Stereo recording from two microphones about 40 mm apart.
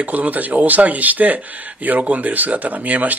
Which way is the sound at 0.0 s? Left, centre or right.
Right.